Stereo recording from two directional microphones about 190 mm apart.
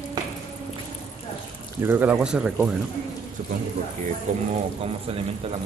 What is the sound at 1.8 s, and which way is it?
Speech, 10° right (ahead or behind).